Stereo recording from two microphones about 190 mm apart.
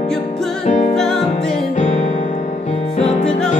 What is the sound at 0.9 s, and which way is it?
Music, 5° left (ahead or behind).